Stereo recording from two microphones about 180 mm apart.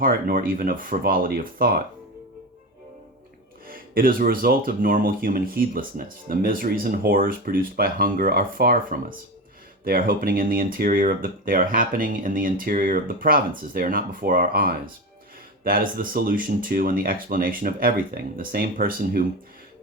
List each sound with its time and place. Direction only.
0.0 s speech: 50° right (ahead or behind)
3.7 s speech: 55° right (ahead or behind)